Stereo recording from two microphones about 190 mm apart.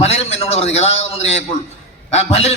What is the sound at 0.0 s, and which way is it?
Speech, 35° left (ahead or behind).